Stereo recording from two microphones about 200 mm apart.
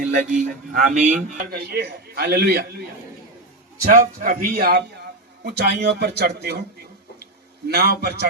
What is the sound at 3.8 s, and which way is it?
A man's voice, 40° right (ahead or behind).